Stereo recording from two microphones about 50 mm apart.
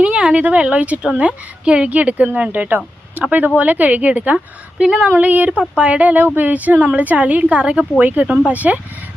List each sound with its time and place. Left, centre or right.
0.0 s speech: centre
4.8 s speech: centre
5.0 s speech: right
5.5 s speech: right